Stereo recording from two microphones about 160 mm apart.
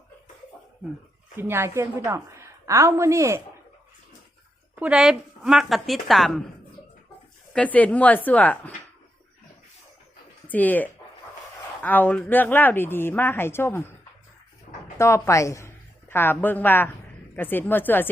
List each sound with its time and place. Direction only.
1.4 s a woman's voice: 15° right (ahead or behind)
4.7 s a woman's voice: 5° right (ahead or behind)
7.5 s speech: 10° left (ahead or behind)
10.5 s speech: 10° left (ahead or behind)
14.9 s a woman's voice: 15° left (ahead or behind)